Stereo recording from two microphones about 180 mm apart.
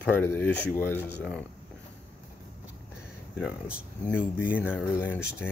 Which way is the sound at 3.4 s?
5° right (ahead or behind).